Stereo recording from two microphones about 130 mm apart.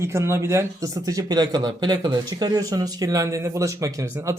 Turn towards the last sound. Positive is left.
turn(degrees=-25)  # may be behind; listen again after turning